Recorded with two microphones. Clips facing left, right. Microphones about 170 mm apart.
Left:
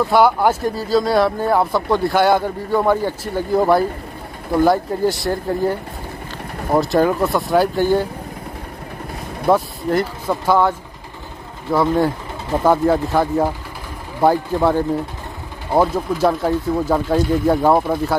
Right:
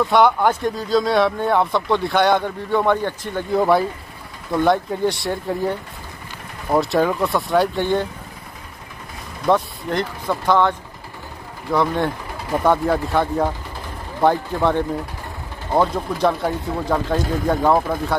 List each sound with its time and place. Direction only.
0.0 s speech: 5° left (ahead or behind)
6.8 s speech: centre (ahead or behind)
9.5 s speech: 5° left (ahead or behind)